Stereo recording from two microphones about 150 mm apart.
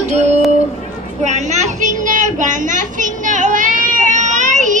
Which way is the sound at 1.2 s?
50° right (ahead or behind).